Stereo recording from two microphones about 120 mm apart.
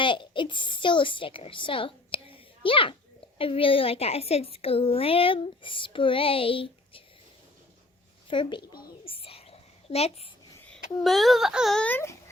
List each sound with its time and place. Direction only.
0.0 s a child's voice: 45° left (ahead or behind)
8.3 s a sound: 40° left (ahead or behind); by 10.2 s 60° left (ahead or behind)
10.7 s speech: centre (ahead or behind)
11.8 s speech: 15° left (ahead or behind)